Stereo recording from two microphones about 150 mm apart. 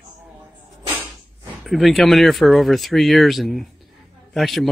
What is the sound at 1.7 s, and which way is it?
Speech, centre (ahead or behind).